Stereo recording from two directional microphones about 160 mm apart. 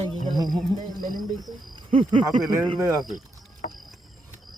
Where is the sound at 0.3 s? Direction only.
25° right (ahead or behind).